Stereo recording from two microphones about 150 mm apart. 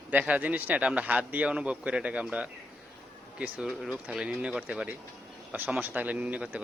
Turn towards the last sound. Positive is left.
turn(degrees=-10)  # may be behind; listen again after turning